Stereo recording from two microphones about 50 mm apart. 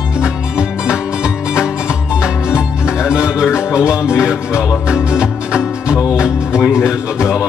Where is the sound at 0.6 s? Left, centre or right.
Centre.